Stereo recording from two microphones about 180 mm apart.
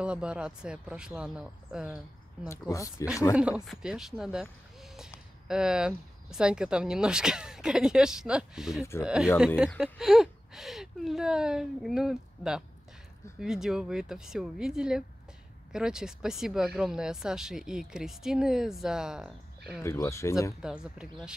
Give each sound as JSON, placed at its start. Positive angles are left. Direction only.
{"t": 0.0, "sound": "speech", "side_deg": -5}
{"t": 2.7, "sound": "speech", "side_deg": 15}
{"t": 3.3, "sound": "speech", "side_deg": -5}
{"t": 19.8, "sound": "speech", "side_deg": 15}
{"t": 20.6, "sound": "speech", "side_deg": -5}